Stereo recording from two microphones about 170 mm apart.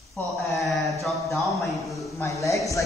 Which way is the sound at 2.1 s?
15° left (ahead or behind).